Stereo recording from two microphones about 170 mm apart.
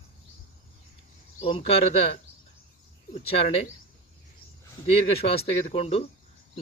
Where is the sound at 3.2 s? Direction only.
35° left (ahead or behind).